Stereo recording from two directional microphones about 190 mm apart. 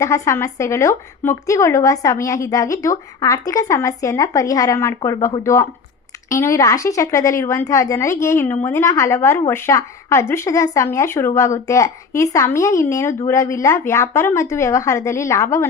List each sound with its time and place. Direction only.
0.0 s a woman's voice: 15° left (ahead or behind)